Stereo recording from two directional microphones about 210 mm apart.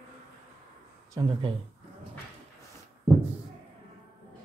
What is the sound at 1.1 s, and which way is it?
Speech, 20° right (ahead or behind).